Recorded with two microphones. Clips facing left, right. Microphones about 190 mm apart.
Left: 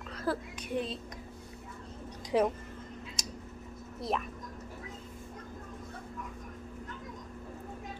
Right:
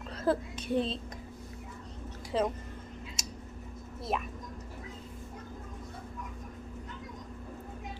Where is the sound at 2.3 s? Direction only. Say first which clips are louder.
Left 3 dB; 15° left (ahead or behind).